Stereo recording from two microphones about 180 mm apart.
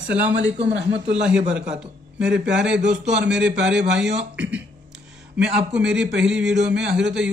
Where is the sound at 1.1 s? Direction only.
5° right (ahead or behind).